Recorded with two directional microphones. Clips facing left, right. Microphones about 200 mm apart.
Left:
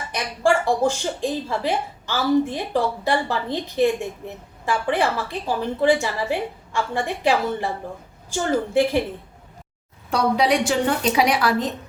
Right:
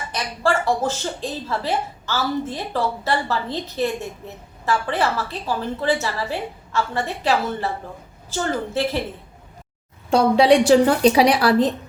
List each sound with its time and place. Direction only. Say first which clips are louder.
0.1 s speech: left 2 dB; 15° left (ahead or behind)
10.1 s a woman's voice: right 5 dB; 25° right (ahead or behind)